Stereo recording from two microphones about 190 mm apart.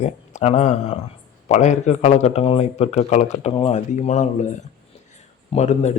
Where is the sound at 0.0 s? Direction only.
35° left (ahead or behind).